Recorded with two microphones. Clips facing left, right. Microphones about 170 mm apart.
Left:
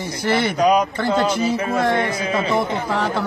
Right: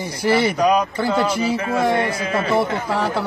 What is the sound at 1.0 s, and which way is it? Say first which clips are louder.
Speech: even; 10° right (ahead or behind).